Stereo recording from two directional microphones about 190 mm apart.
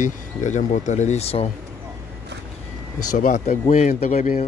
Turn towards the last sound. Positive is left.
turn(degrees=40)  # may be behind; listen again after turning